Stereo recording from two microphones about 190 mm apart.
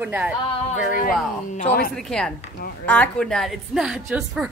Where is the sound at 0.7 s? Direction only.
45° left (ahead or behind).